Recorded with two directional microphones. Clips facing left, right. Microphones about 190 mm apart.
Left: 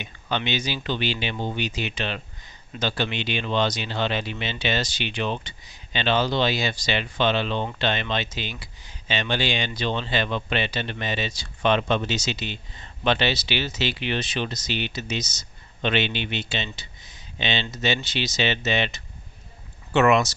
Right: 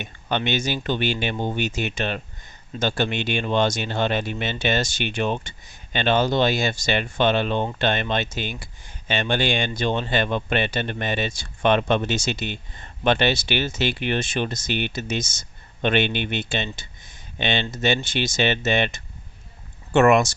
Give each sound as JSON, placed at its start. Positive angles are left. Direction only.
{"t": 0.0, "sound": "speech", "side_deg": -50}